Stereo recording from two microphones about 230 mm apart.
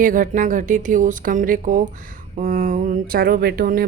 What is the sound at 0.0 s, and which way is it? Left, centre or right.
Speech, right.